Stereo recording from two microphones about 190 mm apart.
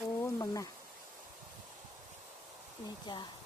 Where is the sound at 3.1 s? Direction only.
25° left (ahead or behind).